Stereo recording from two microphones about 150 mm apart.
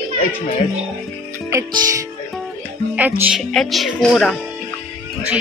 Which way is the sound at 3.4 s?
Centre (ahead or behind).